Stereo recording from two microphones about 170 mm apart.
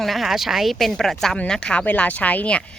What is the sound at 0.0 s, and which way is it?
Speech, centre (ahead or behind).